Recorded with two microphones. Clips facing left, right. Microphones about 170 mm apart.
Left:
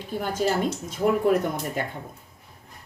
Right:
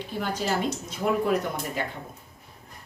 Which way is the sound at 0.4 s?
50° left (ahead or behind).